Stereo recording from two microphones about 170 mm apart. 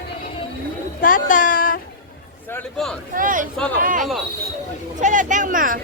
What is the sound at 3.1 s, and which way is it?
Speech, 50° right (ahead or behind).